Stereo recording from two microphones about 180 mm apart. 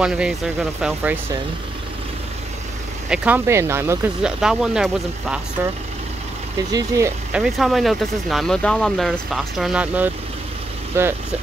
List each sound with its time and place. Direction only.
0.0 s speech: 5° right (ahead or behind)
3.1 s speech: 10° right (ahead or behind)
4.4 s speech: 5° right (ahead or behind)
6.7 s speech: 15° right (ahead or behind)
7.3 s speech: centre (ahead or behind)